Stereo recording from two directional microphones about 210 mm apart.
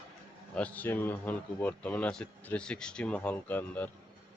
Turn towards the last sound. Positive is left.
turn(degrees=10)  # may be behind; listen again after turning